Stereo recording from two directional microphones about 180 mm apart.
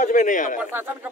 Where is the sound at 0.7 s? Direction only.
10° right (ahead or behind).